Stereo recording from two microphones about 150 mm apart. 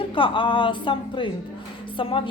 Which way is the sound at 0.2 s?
35° left (ahead or behind).